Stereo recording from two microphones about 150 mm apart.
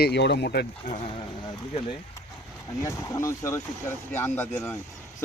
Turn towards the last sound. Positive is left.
turn(degrees=15)  # may be behind; listen again after turning